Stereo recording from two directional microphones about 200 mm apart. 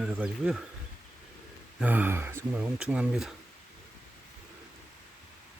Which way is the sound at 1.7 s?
10° right (ahead or behind).